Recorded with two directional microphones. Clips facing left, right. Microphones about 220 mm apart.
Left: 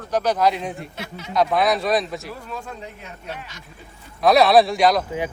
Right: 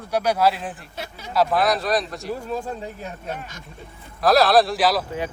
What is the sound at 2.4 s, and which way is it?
Speech, 35° right (ahead or behind).